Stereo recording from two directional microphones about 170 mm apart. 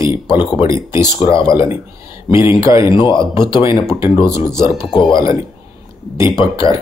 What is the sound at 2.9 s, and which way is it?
Speech, 30° left (ahead or behind).